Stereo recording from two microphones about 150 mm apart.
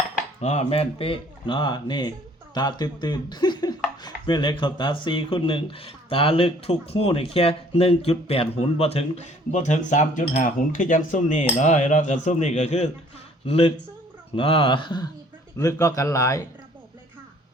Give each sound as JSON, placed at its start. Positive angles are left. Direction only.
{"t": 0.4, "sound": "a man's voice", "side_deg": 45}